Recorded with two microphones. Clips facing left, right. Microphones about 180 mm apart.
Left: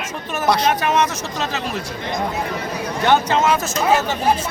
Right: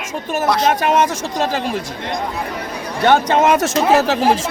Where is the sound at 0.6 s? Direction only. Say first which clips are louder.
Right 3 dB; 50° right (ahead or behind).